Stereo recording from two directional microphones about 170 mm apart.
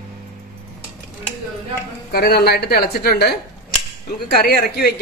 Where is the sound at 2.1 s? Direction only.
65° left (ahead or behind).